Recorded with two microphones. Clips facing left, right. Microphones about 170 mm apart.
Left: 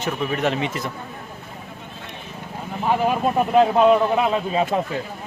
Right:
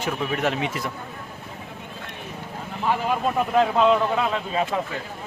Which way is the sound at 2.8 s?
20° left (ahead or behind).